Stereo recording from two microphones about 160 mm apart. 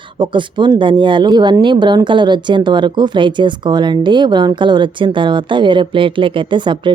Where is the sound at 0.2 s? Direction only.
30° right (ahead or behind).